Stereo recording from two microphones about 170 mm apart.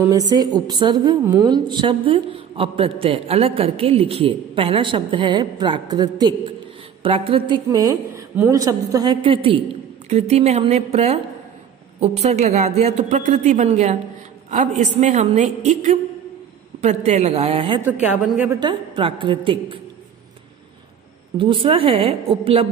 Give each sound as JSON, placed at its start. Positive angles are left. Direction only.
{"t": 0.0, "sound": "a woman's voice", "side_deg": -20}
{"t": 18.0, "sound": "a woman's voice", "side_deg": -5}
{"t": 18.5, "sound": "a woman's voice", "side_deg": -25}
{"t": 21.4, "sound": "a woman's voice", "side_deg": -30}